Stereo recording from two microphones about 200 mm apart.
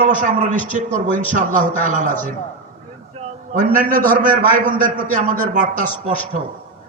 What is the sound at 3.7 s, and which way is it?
A man's voice, 40° right (ahead or behind).